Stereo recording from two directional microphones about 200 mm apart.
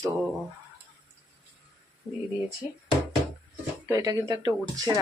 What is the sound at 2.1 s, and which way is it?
Speech, 10° left (ahead or behind).